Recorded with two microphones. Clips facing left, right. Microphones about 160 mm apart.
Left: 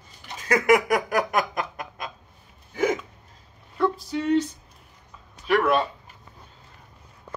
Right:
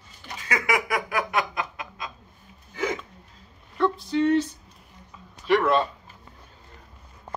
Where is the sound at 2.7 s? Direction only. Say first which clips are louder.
Left 5 dB; 50° left (ahead or behind).